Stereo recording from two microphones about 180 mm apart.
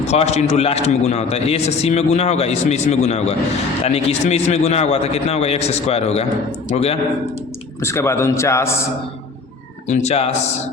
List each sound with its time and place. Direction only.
0.0 s a man's voice: 40° left (ahead or behind)
7.8 s a man's voice: 15° left (ahead or behind)
9.8 s a man's voice: 40° left (ahead or behind)